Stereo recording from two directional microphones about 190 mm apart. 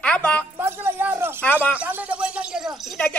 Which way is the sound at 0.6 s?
10° right (ahead or behind).